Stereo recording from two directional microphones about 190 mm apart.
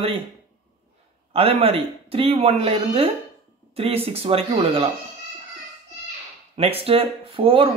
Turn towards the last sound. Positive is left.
turn(degrees=-30)  # may be behind; listen again after turning